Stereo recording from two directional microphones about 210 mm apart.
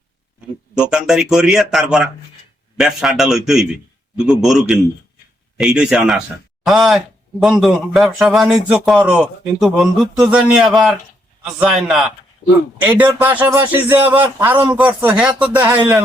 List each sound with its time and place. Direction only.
0.8 s a man's voice: 5° right (ahead or behind)